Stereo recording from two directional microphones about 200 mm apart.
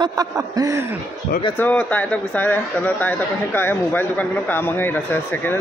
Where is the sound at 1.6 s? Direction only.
5° left (ahead or behind).